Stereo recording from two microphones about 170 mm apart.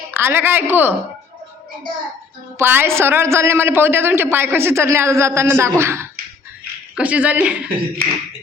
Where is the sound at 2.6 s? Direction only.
15° right (ahead or behind).